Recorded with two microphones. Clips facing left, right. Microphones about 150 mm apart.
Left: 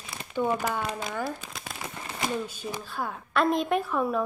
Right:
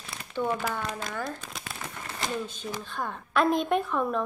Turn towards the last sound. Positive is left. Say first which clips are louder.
# even
turn(degrees=5)  # may be behind; listen again after turning